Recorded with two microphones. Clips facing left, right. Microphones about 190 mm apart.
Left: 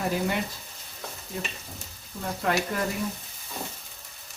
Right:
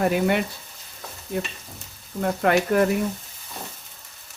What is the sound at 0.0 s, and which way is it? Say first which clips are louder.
Speech: right 6 dB; 65° right (ahead or behind).